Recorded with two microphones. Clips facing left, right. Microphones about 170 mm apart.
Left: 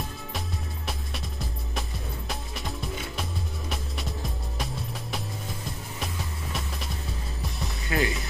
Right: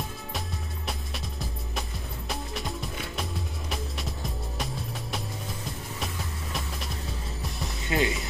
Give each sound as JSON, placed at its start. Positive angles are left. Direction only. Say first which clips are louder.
{"t": 0.8, "sound": "music", "louder": "even", "side_deg": 0}
{"t": 7.8, "sound": "music", "louder": "right 1 dB", "side_deg": -20}